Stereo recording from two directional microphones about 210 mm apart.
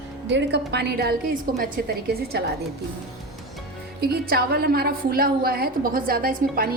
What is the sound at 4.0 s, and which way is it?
A woman's voice, 50° right (ahead or behind).